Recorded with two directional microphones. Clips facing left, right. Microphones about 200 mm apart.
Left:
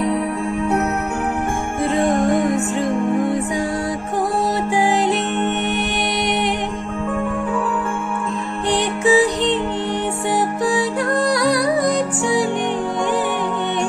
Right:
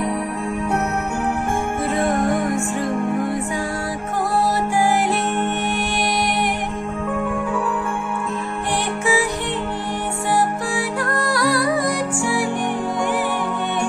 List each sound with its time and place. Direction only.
4.8 s music: 20° left (ahead or behind)
9.0 s music: 20° left (ahead or behind)
10.7 s music: 20° left (ahead or behind)